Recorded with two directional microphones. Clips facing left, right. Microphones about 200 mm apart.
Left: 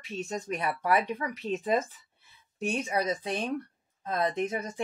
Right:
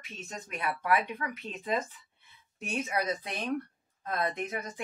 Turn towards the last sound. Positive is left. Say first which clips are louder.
# left 5 dB
turn(degrees=30)  # may be behind; listen again after turning